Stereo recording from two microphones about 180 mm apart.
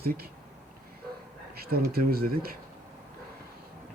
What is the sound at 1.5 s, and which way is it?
Speech, 60° right (ahead or behind).